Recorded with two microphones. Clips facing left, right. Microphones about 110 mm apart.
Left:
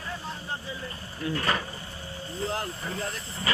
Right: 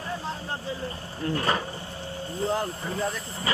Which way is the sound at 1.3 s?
25° right (ahead or behind).